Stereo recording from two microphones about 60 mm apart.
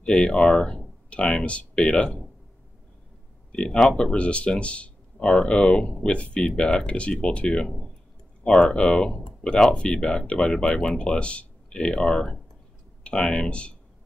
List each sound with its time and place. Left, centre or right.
0.0 s speech: centre
3.5 s speech: centre